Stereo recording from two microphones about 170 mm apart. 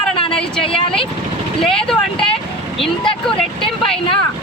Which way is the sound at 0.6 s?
30° left (ahead or behind).